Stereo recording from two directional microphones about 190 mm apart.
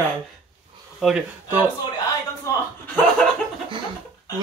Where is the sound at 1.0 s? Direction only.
5° right (ahead or behind).